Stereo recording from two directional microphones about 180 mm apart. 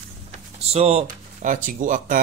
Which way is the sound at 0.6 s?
35° right (ahead or behind).